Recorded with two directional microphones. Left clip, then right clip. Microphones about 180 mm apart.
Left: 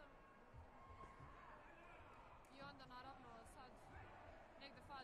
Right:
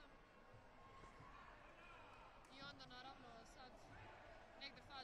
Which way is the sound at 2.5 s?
40° left (ahead or behind).